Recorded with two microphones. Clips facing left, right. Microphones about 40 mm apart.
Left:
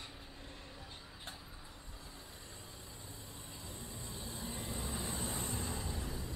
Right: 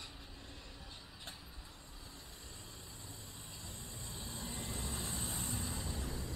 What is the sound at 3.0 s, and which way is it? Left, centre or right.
Vehicle, centre.